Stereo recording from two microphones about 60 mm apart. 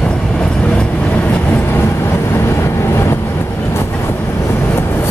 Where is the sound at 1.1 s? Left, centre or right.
Left.